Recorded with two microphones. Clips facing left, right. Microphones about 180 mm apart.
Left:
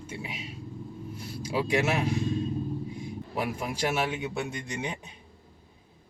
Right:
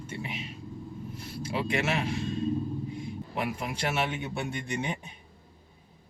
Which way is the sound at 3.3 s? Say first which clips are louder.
Left 2 dB; 5° left (ahead or behind).